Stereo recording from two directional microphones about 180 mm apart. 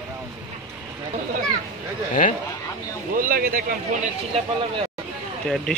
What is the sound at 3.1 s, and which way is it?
Speech, 55° right (ahead or behind).